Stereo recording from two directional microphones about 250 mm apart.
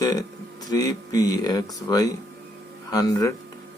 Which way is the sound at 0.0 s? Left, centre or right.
Centre.